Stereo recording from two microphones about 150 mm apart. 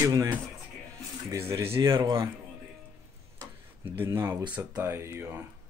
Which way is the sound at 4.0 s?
15° right (ahead or behind).